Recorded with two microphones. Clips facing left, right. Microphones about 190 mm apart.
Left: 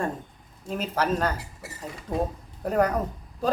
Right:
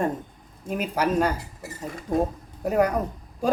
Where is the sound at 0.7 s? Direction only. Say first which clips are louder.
Right 2 dB; 10° right (ahead or behind).